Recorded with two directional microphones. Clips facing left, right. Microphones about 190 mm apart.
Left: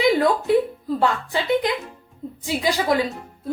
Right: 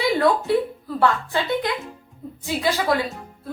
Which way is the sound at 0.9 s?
15° left (ahead or behind).